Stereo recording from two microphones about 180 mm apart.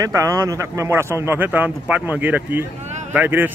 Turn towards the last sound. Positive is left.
turn(degrees=-10)  # may be behind; listen again after turning